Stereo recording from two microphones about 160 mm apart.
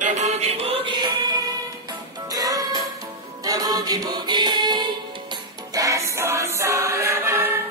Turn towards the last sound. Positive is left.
turn(degrees=-15)  # may be behind; listen again after turning